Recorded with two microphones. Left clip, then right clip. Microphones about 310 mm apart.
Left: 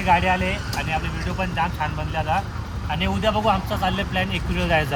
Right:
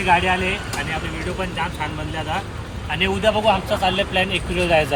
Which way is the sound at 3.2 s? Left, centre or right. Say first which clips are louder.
Right 2 dB; left.